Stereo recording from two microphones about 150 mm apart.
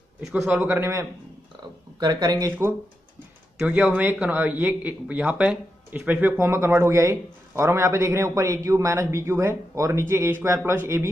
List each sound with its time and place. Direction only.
0.3 s speech: 10° right (ahead or behind)
2.0 s speech: 30° right (ahead or behind)
3.5 s speech: 10° right (ahead or behind)